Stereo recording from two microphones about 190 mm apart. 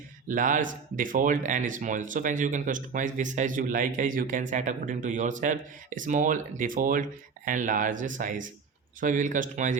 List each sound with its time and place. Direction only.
0.3 s speech: 45° right (ahead or behind)